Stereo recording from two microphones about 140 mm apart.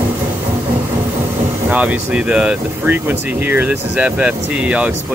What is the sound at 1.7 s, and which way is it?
Speech, 10° right (ahead or behind).